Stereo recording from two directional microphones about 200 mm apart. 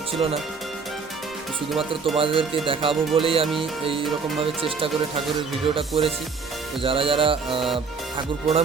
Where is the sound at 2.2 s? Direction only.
25° right (ahead or behind).